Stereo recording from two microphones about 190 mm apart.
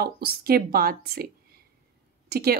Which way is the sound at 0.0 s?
55° right (ahead or behind).